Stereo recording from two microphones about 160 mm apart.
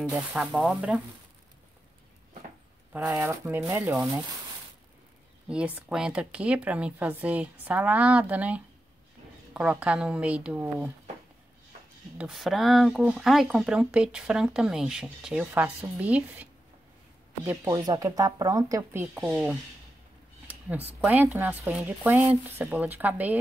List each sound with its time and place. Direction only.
0.1 s speech: 5° right (ahead or behind)
2.9 s speech: 10° right (ahead or behind)
5.5 s speech: 5° right (ahead or behind)
12.2 s speech: centre (ahead or behind)
17.6 s speech: 25° right (ahead or behind)